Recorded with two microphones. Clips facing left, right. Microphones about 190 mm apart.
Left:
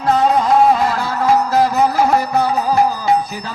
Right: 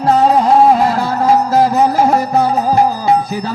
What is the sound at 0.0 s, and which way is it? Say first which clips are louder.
Music: right 3 dB; 35° right (ahead or behind).